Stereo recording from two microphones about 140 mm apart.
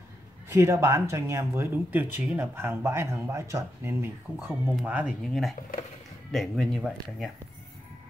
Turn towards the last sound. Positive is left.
turn(degrees=0)  # may be behind; listen again after turning